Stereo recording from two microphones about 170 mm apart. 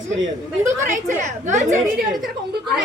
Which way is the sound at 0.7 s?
45° right (ahead or behind).